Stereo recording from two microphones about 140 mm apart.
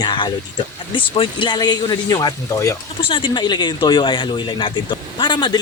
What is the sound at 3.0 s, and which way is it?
Speech, 40° left (ahead or behind).